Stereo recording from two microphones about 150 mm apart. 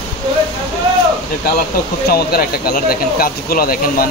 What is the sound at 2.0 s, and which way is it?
A man's voice, 90° left.